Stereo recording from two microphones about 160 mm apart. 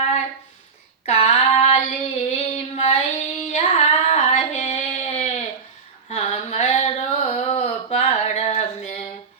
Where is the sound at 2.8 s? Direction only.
40° left (ahead or behind).